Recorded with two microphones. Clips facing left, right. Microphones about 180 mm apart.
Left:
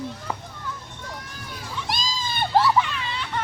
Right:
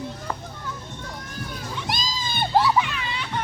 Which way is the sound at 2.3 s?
Centre (ahead or behind).